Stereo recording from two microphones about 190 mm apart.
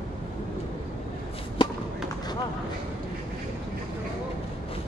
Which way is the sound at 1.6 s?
25° left (ahead or behind).